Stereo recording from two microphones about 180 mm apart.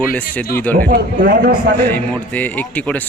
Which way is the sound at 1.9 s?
10° left (ahead or behind).